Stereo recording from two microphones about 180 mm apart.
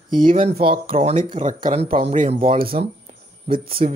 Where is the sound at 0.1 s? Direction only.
50° right (ahead or behind).